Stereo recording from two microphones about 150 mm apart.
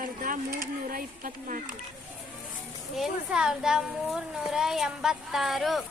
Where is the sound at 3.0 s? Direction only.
5° right (ahead or behind).